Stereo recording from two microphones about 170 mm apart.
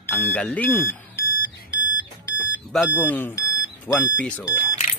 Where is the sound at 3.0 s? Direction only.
10° left (ahead or behind).